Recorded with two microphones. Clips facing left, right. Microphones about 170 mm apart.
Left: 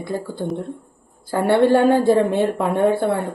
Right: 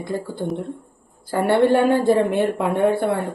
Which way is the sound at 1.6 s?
15° right (ahead or behind).